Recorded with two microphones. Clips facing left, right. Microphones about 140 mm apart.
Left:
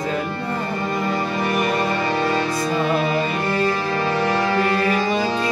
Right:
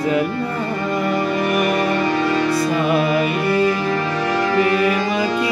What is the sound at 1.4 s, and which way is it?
Music, 30° left (ahead or behind).